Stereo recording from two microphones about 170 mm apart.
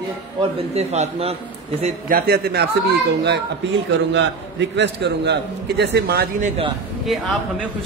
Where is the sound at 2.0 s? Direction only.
60° right (ahead or behind).